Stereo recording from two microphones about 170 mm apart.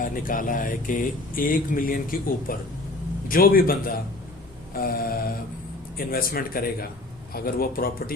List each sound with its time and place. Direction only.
0.0 s speech: 55° left (ahead or behind)